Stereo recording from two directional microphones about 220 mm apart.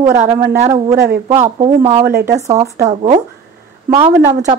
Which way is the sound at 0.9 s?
45° right (ahead or behind).